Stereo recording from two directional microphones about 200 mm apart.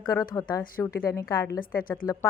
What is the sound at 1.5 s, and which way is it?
Speech, 45° left (ahead or behind).